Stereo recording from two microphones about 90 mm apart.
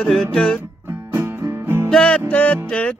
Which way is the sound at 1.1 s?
25° right (ahead or behind).